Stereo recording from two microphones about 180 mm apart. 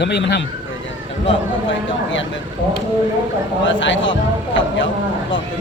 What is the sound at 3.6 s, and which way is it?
Speech, 90° left.